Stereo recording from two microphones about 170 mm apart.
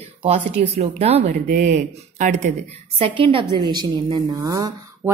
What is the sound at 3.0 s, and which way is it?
A woman's voice, 30° right (ahead or behind).